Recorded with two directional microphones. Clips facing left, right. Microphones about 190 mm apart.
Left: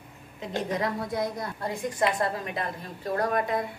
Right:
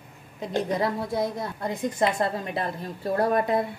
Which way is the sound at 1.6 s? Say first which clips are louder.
Right 2 dB; 20° right (ahead or behind).